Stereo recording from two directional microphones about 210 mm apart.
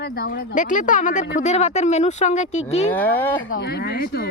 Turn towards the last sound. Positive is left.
turn(degrees=45)  # may be behind; listen again after turning